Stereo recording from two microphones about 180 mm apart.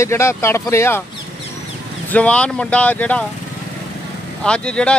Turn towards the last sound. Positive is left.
turn(degrees=5)  # may be behind; listen again after turning